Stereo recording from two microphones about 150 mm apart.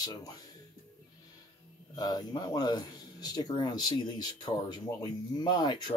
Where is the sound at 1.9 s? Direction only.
25° left (ahead or behind).